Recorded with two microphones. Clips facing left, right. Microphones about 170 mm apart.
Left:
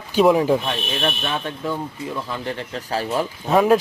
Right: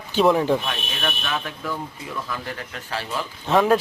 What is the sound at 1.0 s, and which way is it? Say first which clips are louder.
Speech: left 1 dB; 30° left (ahead or behind).